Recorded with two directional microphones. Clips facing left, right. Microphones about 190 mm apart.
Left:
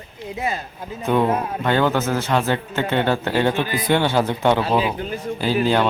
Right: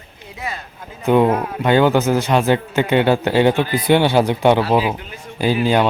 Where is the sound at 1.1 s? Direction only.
15° right (ahead or behind).